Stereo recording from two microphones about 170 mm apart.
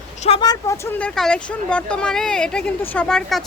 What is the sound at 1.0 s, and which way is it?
Speech, 5° left (ahead or behind).